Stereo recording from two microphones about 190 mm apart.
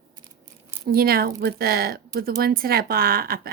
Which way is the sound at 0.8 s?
50° right (ahead or behind).